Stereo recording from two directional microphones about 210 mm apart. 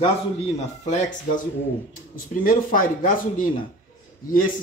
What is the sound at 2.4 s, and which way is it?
Speech, 40° left (ahead or behind).